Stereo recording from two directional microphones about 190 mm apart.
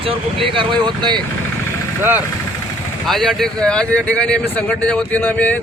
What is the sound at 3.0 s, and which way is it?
Speech, centre (ahead or behind).